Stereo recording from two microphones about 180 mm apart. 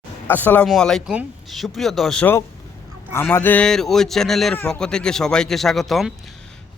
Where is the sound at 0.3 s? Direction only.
10° left (ahead or behind).